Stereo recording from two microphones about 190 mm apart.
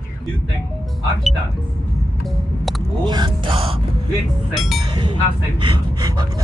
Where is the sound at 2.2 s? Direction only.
Centre (ahead or behind).